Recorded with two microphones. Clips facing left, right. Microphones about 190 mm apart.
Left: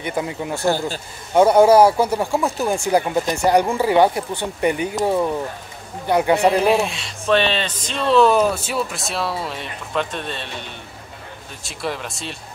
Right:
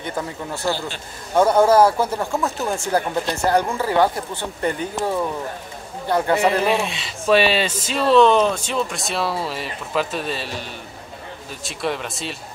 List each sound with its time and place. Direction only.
0.0 s speech: 15° left (ahead or behind)
0.7 s speech: 45° left (ahead or behind)
1.3 s speech: 15° left (ahead or behind)
6.0 s a man's voice: 15° left (ahead or behind)
6.3 s speech: centre (ahead or behind)